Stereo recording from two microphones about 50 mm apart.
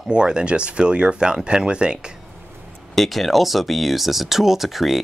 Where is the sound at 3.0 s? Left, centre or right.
Centre.